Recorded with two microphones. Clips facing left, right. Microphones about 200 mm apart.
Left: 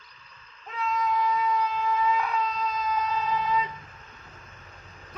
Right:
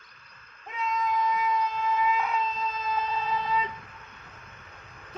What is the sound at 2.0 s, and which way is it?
Shofar, 20° right (ahead or behind).